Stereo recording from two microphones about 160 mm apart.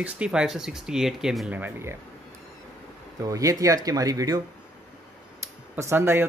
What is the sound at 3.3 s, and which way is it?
Speech, 20° right (ahead or behind).